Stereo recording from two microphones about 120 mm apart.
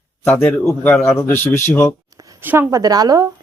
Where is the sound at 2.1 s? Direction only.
30° right (ahead or behind).